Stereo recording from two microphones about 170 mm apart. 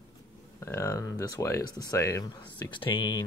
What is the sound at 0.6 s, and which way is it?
Speech, 15° left (ahead or behind).